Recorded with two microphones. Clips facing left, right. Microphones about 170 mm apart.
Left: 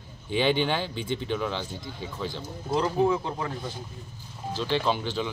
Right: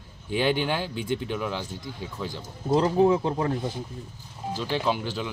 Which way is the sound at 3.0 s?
30° right (ahead or behind).